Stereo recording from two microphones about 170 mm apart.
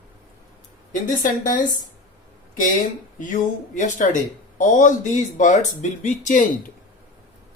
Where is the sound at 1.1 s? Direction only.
50° left (ahead or behind).